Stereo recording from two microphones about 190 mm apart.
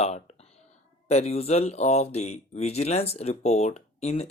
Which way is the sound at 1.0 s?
35° left (ahead or behind).